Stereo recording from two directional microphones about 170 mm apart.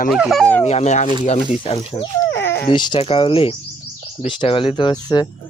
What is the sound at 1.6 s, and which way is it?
Speech, 30° left (ahead or behind).